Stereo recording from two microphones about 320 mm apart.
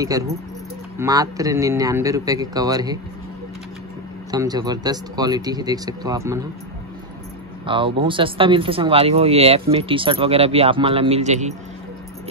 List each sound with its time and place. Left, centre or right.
0.9 s speech: centre
4.3 s speech: centre
7.6 s speech: centre